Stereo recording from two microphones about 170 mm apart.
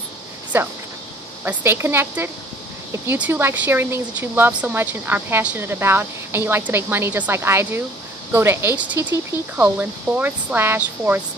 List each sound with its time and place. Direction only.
0.5 s speech: 10° right (ahead or behind)